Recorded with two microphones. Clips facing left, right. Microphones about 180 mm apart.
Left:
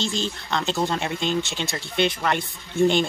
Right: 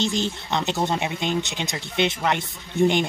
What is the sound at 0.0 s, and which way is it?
Speech, 20° right (ahead or behind).